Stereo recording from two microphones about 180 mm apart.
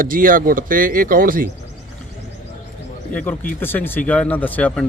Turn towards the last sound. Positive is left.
turn(degrees=10)  # may be behind; listen again after turning